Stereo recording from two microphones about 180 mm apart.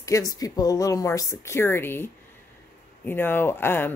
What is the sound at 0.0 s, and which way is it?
Speech, 20° left (ahead or behind).